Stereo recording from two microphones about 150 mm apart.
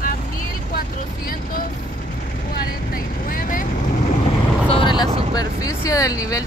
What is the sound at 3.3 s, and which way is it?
Vehicle, 65° left (ahead or behind).